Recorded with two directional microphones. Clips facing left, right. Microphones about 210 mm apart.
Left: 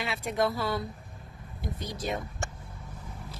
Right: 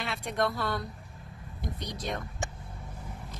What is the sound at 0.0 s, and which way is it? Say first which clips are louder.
Speech: left 2 dB; centre (ahead or behind).